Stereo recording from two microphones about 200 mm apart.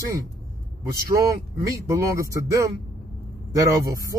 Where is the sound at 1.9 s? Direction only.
15° right (ahead or behind).